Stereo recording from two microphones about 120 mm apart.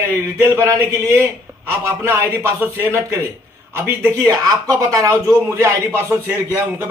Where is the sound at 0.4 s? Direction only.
25° right (ahead or behind).